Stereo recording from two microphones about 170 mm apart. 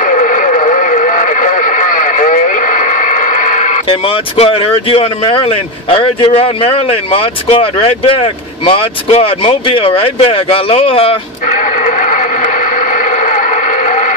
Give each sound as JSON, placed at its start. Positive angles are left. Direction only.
{"t": 0.0, "sound": "radio", "side_deg": 50}
{"t": 4.4, "sound": "speech", "side_deg": 35}
{"t": 11.5, "sound": "a sound", "side_deg": 50}